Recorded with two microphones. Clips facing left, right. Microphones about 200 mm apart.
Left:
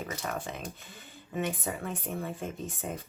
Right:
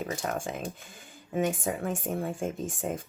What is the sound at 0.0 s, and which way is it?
Speech, 40° right (ahead or behind).